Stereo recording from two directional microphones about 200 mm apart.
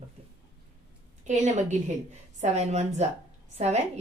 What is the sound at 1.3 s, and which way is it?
Speech, 35° right (ahead or behind).